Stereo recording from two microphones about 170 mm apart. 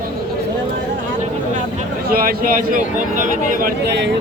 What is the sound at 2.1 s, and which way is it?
A man's voice, 60° right (ahead or behind).